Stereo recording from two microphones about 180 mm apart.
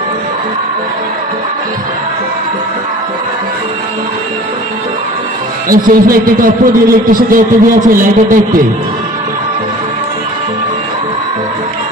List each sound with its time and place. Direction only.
5.6 s speech: 50° right (ahead or behind)